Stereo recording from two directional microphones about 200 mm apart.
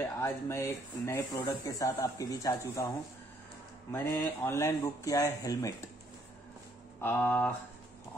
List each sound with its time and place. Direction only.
0.0 s speech: 10° left (ahead or behind)
3.9 s speech: 10° left (ahead or behind)
7.0 s speech: 10° left (ahead or behind)